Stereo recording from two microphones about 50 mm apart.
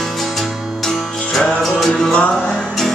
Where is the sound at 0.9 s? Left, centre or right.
Centre.